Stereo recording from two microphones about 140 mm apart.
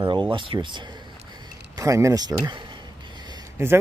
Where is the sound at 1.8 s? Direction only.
20° right (ahead or behind).